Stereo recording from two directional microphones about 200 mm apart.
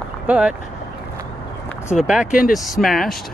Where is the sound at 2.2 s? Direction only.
45° left (ahead or behind).